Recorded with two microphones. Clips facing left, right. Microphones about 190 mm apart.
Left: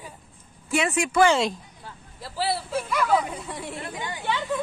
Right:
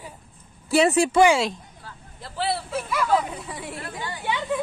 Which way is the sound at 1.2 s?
10° right (ahead or behind).